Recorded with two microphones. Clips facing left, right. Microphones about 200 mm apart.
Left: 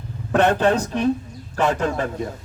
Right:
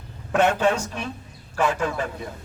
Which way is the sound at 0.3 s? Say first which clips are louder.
Left 3 dB; 60° left (ahead or behind).